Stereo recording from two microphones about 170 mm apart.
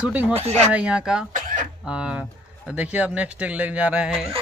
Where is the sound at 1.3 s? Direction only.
50° right (ahead or behind).